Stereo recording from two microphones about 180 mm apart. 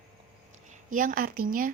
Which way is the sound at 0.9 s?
50° right (ahead or behind).